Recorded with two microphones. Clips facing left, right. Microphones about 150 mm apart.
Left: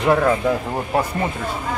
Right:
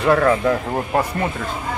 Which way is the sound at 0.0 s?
15° left (ahead or behind).